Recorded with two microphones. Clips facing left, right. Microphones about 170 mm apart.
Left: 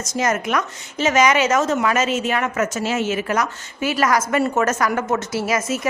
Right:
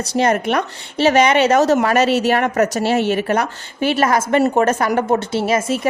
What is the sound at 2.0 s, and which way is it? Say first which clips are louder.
Speech: right 6 dB; 70° right (ahead or behind).